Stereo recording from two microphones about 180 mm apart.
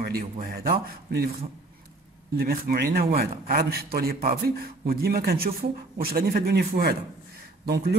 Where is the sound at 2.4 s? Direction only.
60° right (ahead or behind).